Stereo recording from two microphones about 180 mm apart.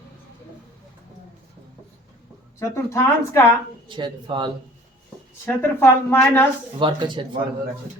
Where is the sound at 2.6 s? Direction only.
15° left (ahead or behind).